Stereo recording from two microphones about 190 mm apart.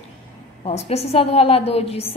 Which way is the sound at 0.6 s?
35° left (ahead or behind).